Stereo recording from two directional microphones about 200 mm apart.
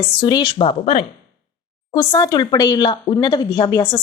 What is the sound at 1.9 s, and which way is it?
A woman's voice, 15° left (ahead or behind).